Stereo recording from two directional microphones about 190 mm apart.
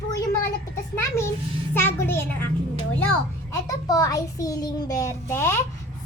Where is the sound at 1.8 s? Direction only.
10° left (ahead or behind).